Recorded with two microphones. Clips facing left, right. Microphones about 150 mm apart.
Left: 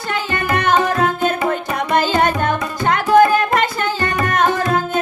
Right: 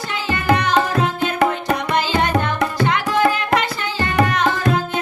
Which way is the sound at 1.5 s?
50° left (ahead or behind).